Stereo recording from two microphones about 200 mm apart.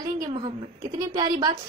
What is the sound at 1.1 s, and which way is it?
Speech, 20° right (ahead or behind).